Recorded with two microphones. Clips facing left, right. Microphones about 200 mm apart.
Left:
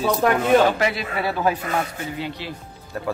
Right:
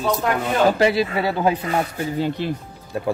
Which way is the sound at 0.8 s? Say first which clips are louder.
Right 5 dB; 30° right (ahead or behind).